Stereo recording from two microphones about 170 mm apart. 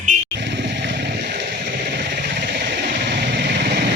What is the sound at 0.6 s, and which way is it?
Vehicle, 90° right.